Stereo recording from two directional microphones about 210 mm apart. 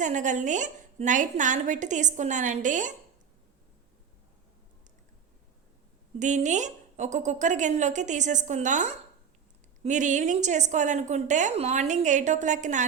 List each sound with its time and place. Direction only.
0.0 s a woman's voice: 35° right (ahead or behind)
6.1 s a woman's voice: 35° right (ahead or behind)